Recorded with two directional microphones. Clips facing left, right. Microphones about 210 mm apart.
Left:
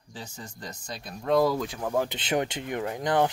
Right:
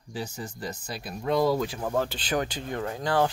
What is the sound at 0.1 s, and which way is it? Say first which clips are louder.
Speech: right 7 dB; 10° right (ahead or behind).